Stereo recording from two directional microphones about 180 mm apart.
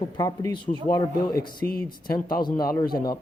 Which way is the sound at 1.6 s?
10° left (ahead or behind).